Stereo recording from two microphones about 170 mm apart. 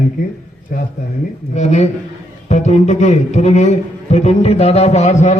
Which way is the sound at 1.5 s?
40° left (ahead or behind).